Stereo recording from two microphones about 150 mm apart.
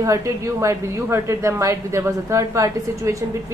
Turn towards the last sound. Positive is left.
turn(degrees=-20)  # may be behind; listen again after turning